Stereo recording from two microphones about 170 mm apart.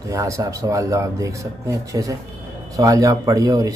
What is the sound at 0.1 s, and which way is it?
Speech, 20° right (ahead or behind).